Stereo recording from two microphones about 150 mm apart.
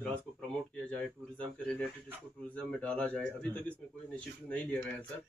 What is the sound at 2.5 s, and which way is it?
A man's voice, 10° left (ahead or behind).